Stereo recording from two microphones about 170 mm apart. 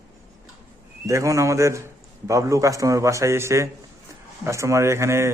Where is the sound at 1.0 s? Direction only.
20° right (ahead or behind).